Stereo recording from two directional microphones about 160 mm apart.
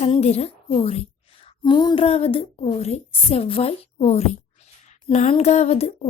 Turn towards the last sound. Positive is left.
turn(degrees=40)  # may be behind; listen again after turning